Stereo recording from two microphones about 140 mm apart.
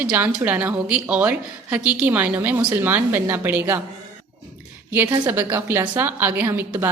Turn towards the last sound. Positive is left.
turn(degrees=-15)  # may be behind; listen again after turning